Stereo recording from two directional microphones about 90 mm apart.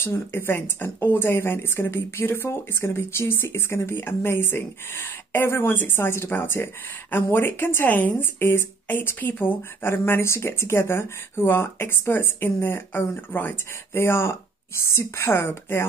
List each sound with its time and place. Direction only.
0.0 s speech: 25° left (ahead or behind)